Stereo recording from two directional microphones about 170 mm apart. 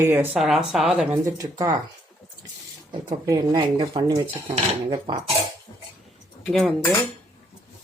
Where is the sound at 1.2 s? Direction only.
20° right (ahead or behind).